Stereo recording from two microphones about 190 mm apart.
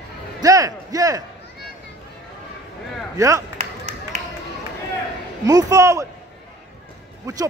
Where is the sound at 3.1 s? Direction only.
15° right (ahead or behind).